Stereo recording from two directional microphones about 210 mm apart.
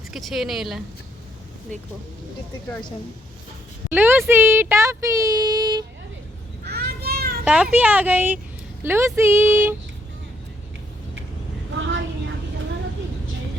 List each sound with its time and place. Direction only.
0.1 s speech: centre (ahead or behind)
3.8 s speech: 10° right (ahead or behind)
6.7 s children playing: 45° right (ahead or behind)
7.4 s speech: 5° right (ahead or behind)
11.8 s vehicle: 65° right (ahead or behind)